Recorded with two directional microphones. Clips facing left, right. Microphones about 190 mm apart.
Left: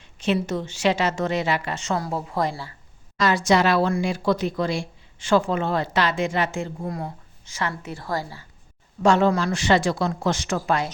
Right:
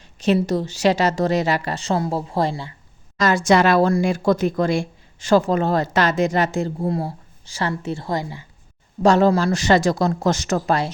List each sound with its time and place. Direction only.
0.0 s a sound: 40° right (ahead or behind)
0.3 s speech: 35° right (ahead or behind)
3.2 s speech: 45° right (ahead or behind); by 8.4 s 20° right (ahead or behind)
9.0 s speech: 35° right (ahead or behind)